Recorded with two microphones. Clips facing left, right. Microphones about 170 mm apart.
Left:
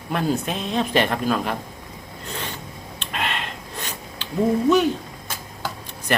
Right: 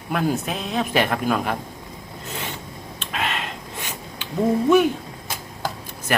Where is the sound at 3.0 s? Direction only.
5° right (ahead or behind).